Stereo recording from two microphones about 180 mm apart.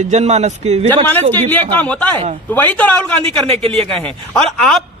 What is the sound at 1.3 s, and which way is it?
A man's voice, 10° left (ahead or behind).